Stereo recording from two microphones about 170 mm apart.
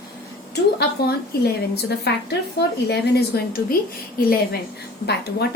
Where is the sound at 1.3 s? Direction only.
65° left (ahead or behind).